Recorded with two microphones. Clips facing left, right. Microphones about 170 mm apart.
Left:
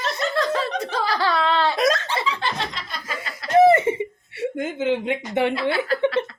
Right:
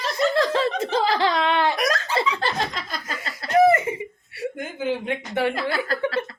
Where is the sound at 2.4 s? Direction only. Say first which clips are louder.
Right 2 dB; 40° right (ahead or behind).